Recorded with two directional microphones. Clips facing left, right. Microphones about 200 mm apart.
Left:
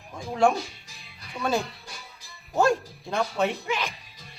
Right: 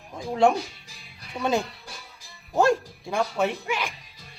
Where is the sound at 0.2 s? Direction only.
20° right (ahead or behind).